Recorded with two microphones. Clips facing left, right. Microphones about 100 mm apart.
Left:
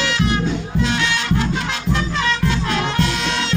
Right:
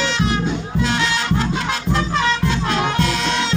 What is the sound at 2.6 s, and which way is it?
Music, 35° right (ahead or behind).